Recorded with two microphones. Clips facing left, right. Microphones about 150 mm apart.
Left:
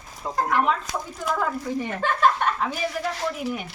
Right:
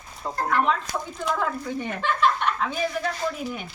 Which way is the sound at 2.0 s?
45° left (ahead or behind).